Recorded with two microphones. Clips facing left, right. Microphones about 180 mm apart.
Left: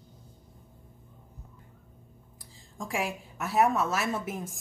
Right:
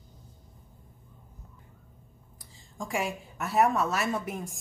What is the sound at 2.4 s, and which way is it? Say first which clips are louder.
A woman's voice: right 1 dB; centre (ahead or behind).